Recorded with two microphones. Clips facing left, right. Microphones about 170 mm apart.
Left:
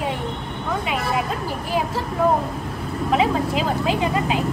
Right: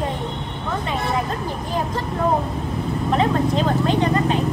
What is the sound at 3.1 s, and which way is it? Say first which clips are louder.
Speech: even; 5° left (ahead or behind).